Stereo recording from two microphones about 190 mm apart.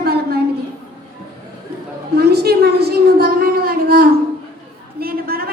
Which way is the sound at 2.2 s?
55° right (ahead or behind).